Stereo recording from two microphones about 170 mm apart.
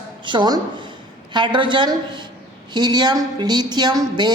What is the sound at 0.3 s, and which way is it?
Speech, 25° right (ahead or behind).